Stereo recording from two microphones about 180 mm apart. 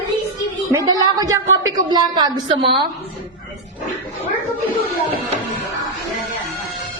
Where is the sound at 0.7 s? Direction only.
20° right (ahead or behind).